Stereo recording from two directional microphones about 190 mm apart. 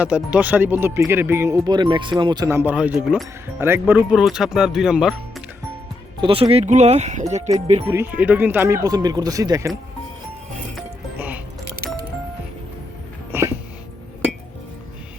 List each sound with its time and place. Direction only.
0.0 s speech: 5° right (ahead or behind)
6.2 s speech: 30° right (ahead or behind)
7.9 s speech: 10° right (ahead or behind)
13.3 s music: 15° right (ahead or behind)